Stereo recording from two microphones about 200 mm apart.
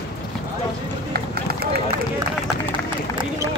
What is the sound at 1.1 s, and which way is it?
Run, 50° right (ahead or behind).